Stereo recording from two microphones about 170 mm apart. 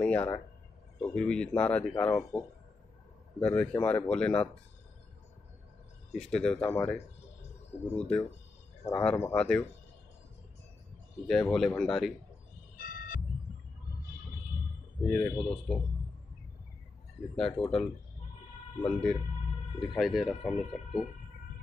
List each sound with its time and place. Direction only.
0.0 s speech: 10° left (ahead or behind)
6.1 s speech: 5° left (ahead or behind)
8.8 s speech: 15° left (ahead or behind)
11.2 s speech: centre (ahead or behind)
12.7 s vehicle: 55° left (ahead or behind)
15.0 s speech: 10° left (ahead or behind)
17.4 s speech: centre (ahead or behind)